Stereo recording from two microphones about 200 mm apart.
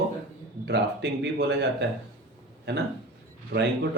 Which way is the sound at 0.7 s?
55° right (ahead or behind).